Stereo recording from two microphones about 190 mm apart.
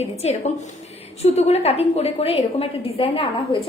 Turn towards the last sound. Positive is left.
turn(degrees=30)  # may be behind; listen again after turning